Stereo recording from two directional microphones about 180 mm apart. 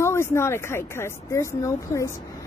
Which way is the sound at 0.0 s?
15° left (ahead or behind).